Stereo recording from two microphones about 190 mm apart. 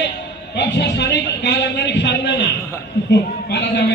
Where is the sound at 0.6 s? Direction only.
65° left (ahead or behind).